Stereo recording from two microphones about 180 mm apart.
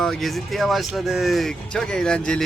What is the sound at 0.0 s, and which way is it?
Speech, centre (ahead or behind).